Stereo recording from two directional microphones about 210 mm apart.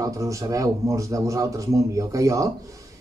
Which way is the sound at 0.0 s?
15° right (ahead or behind).